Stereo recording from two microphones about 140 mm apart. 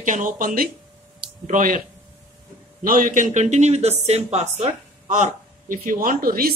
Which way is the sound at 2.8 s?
80° right.